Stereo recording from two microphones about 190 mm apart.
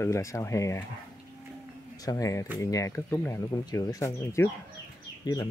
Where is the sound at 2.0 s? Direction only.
20° left (ahead or behind).